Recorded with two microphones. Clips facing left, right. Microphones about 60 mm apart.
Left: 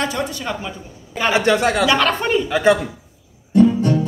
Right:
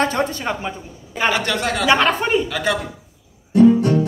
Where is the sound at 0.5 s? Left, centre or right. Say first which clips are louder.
Right 2 dB; right.